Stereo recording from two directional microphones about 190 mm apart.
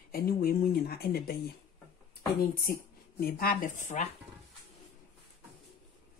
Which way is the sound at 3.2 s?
50° left (ahead or behind).